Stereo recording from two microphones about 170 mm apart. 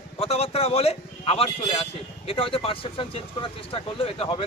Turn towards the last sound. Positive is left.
turn(degrees=35)  # may be behind; listen again after turning